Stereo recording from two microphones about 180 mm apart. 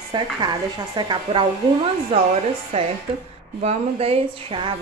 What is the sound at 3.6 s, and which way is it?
A woman's voice, 35° right (ahead or behind).